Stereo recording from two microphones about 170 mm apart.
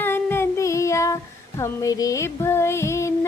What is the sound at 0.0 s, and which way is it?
Child singing, 15° left (ahead or behind).